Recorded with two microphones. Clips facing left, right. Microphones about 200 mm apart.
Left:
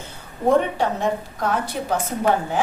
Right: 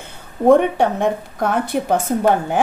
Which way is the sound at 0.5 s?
55° right (ahead or behind).